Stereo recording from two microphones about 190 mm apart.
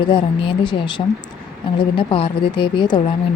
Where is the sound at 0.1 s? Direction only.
25° left (ahead or behind).